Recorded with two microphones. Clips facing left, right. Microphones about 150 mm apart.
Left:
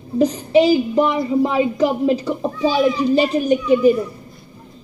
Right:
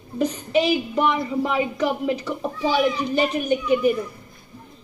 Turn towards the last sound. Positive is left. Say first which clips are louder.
# left 6 dB
turn(degrees=30)  # may be behind; listen again after turning